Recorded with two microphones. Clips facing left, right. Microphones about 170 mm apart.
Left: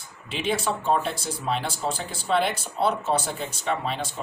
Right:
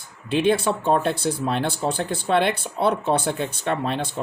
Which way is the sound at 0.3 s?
55° right (ahead or behind).